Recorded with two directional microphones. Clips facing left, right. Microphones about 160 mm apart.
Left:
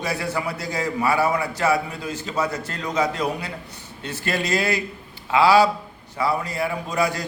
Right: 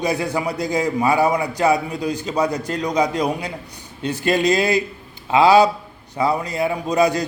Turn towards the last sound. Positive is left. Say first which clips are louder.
# right 6 dB
turn(degrees=-20)  # may be behind; listen again after turning